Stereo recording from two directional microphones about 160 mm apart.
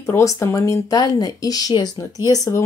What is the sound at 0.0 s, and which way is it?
Speech, 15° left (ahead or behind).